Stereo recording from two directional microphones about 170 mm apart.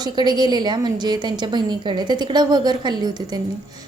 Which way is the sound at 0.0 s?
25° right (ahead or behind).